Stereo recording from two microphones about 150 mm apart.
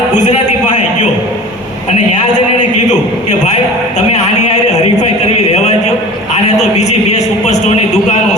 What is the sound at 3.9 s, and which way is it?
Speech, 45° left (ahead or behind).